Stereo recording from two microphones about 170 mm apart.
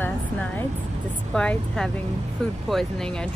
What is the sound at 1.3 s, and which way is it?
Speech, 5° left (ahead or behind).